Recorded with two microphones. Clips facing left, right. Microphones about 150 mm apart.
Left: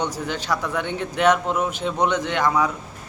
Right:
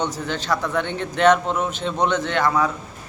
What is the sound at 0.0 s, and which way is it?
A man's voice, 10° left (ahead or behind).